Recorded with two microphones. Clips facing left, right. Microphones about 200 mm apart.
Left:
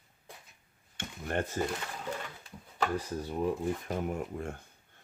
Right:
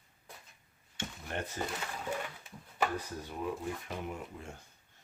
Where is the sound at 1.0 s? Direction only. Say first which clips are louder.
Left 5 dB; 55° left (ahead or behind).